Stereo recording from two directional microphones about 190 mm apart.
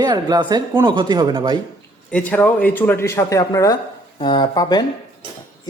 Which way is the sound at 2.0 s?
5° left (ahead or behind).